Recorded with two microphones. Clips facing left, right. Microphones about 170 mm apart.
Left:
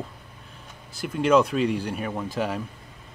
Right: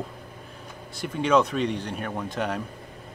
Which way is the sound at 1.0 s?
5° left (ahead or behind).